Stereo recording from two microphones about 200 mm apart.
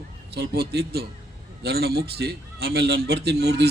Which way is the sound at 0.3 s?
55° right (ahead or behind).